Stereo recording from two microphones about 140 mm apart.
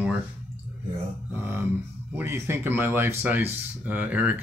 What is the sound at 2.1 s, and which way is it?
Speech, 20° right (ahead or behind).